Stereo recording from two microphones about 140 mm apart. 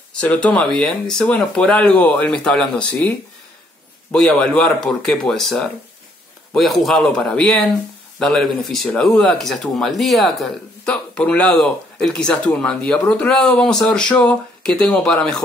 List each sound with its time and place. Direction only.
0.2 s speech: 10° left (ahead or behind)